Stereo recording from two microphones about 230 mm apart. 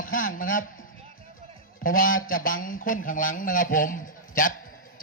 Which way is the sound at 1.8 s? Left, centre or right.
Left.